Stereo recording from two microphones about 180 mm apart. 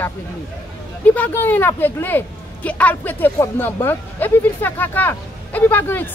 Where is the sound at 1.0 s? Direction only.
10° left (ahead or behind).